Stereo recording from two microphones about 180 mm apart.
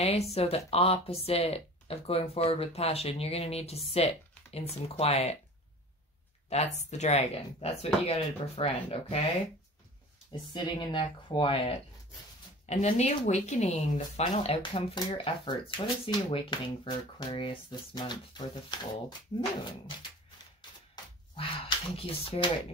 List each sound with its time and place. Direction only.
0.0 s speech: 35° left (ahead or behind)
6.5 s speech: 35° left (ahead or behind)
10.5 s speech: 25° left (ahead or behind)
12.6 s speech: 40° left (ahead or behind); by 19.1 s 25° left (ahead or behind)
20.9 s speech: 30° left (ahead or behind)